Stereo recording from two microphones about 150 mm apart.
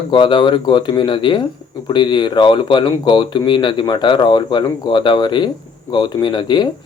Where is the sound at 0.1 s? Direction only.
35° left (ahead or behind).